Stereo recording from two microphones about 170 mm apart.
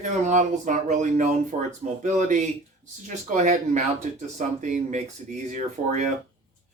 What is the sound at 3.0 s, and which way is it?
Speech, 45° right (ahead or behind).